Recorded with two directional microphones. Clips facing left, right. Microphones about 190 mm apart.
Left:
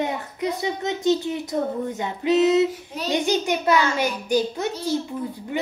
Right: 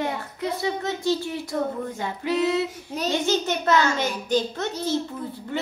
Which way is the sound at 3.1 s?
15° left (ahead or behind).